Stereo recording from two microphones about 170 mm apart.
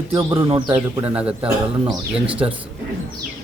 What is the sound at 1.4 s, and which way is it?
Speech, 20° right (ahead or behind).